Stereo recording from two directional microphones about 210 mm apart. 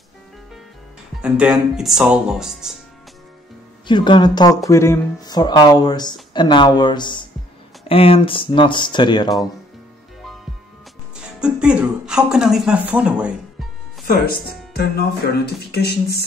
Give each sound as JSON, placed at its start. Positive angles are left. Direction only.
{"t": 1.2, "sound": "speech", "side_deg": -5}
{"t": 3.8, "sound": "speech", "side_deg": 20}
{"t": 11.3, "sound": "speech", "side_deg": -5}
{"t": 14.0, "sound": "speech", "side_deg": 45}
{"t": 15.7, "sound": "music", "side_deg": 50}